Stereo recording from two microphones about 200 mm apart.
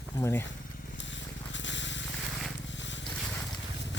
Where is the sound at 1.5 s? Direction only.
65° left (ahead or behind).